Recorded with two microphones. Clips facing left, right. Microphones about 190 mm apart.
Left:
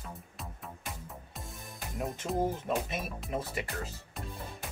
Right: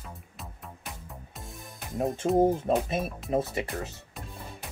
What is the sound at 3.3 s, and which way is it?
Speech, 25° right (ahead or behind).